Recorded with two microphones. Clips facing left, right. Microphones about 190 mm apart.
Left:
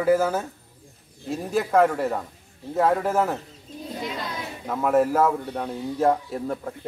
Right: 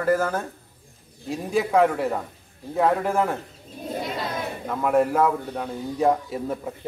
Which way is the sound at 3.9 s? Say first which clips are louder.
Right 3 dB; 55° right (ahead or behind).